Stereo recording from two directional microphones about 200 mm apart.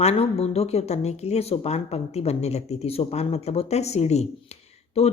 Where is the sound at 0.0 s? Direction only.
30° left (ahead or behind).